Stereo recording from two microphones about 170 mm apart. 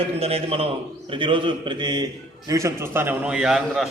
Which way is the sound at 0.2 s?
35° right (ahead or behind).